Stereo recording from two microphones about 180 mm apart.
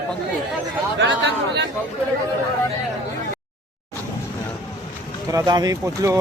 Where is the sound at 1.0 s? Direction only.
85° right.